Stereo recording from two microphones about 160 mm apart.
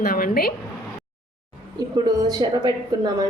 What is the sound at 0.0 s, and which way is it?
Speech, 65° left (ahead or behind).